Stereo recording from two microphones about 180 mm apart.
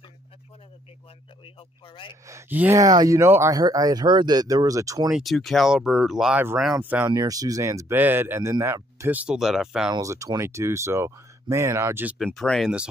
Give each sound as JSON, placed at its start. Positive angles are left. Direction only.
{"t": 2.2, "sound": "speech", "side_deg": -15}
{"t": 5.1, "sound": "speech", "side_deg": 0}
{"t": 7.1, "sound": "speech", "side_deg": -20}
{"t": 9.8, "sound": "speech", "side_deg": -20}
{"t": 12.4, "sound": "speech", "side_deg": 0}